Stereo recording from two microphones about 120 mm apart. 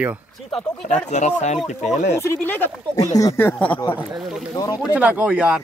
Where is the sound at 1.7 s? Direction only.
70° left (ahead or behind).